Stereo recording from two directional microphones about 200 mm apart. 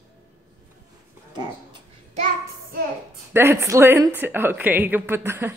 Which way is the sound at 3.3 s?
15° right (ahead or behind).